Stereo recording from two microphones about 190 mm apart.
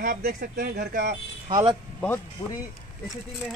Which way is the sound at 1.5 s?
20° right (ahead or behind).